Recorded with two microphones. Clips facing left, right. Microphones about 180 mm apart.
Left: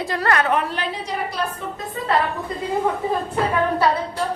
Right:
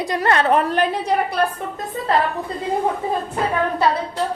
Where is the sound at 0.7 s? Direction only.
55° right (ahead or behind).